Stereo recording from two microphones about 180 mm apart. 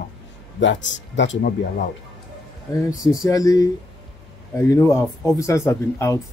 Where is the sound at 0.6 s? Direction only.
90° left.